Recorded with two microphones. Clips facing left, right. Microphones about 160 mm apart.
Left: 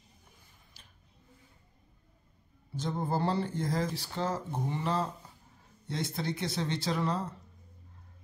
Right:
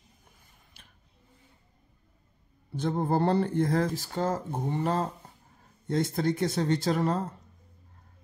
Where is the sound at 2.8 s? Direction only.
60° right (ahead or behind).